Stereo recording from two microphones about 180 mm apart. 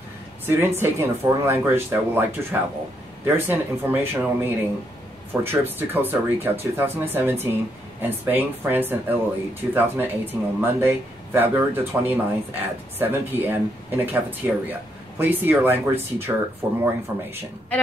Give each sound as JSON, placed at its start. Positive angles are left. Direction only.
{"t": 0.5, "sound": "speech", "side_deg": -10}